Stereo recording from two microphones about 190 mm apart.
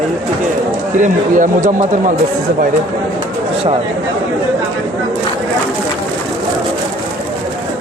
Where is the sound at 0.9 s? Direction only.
40° right (ahead or behind).